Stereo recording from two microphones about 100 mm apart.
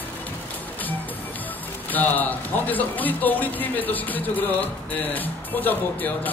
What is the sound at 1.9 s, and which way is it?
Speech, 15° left (ahead or behind).